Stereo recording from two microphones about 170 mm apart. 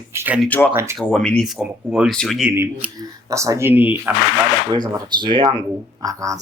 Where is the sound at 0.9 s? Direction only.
5° left (ahead or behind).